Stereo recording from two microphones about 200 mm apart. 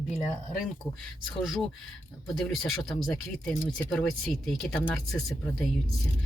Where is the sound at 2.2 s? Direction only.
Centre (ahead or behind).